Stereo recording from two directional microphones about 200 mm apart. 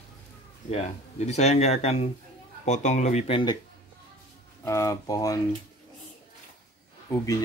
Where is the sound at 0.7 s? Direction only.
35° left (ahead or behind).